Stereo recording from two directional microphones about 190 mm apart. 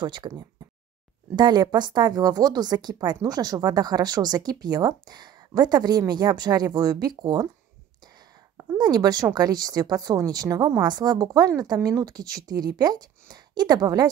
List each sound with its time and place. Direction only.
0.0 s speech: 25° right (ahead or behind)
8.5 s speech: 20° right (ahead or behind)